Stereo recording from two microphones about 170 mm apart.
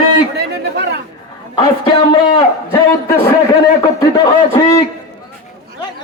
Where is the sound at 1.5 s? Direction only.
25° left (ahead or behind).